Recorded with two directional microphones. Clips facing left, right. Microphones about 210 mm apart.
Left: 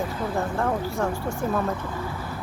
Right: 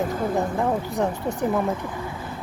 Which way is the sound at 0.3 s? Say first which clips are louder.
Even; 15° right (ahead or behind).